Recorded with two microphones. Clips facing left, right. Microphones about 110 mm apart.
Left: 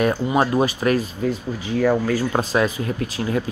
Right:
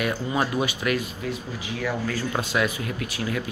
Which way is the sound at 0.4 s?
35° left (ahead or behind).